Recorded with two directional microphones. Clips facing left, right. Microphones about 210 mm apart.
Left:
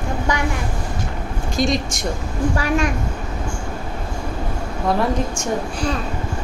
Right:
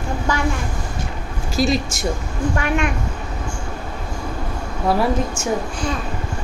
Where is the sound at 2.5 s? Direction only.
35° left (ahead or behind).